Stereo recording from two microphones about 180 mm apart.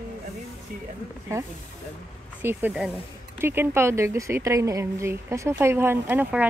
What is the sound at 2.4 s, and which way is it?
Speech, 5° right (ahead or behind).